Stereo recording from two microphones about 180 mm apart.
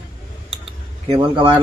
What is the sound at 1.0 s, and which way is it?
Speech, 30° right (ahead or behind).